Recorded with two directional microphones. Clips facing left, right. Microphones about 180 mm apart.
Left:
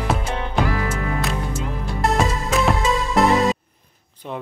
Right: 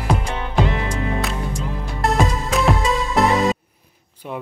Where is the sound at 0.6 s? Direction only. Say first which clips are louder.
Even; 25° right (ahead or behind).